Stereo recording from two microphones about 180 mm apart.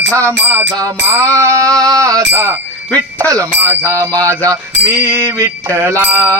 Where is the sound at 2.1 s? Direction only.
15° right (ahead or behind).